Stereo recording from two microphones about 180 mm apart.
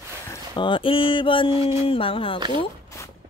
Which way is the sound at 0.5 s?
25° left (ahead or behind).